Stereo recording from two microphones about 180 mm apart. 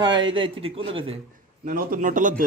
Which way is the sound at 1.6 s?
50° right (ahead or behind).